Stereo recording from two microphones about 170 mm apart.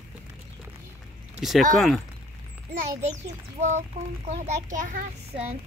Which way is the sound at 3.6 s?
40° right (ahead or behind).